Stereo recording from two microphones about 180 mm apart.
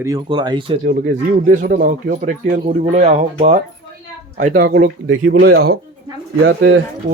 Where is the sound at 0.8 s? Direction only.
50° right (ahead or behind).